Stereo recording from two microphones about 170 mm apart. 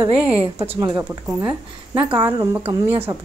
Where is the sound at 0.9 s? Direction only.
10° right (ahead or behind).